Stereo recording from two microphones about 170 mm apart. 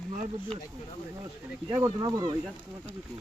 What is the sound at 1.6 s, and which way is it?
Speech, 25° right (ahead or behind).